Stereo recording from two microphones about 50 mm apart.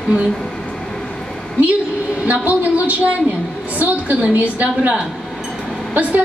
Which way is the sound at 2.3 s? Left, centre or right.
Right.